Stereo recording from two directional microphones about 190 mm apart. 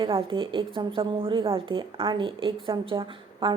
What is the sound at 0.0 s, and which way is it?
A woman's voice, 25° right (ahead or behind).